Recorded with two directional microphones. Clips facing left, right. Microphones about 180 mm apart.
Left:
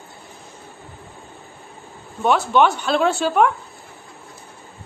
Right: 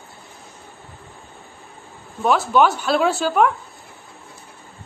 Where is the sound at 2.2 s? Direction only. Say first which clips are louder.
Even; centre (ahead or behind).